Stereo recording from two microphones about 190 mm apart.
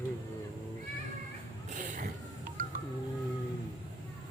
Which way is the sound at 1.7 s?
45° right (ahead or behind).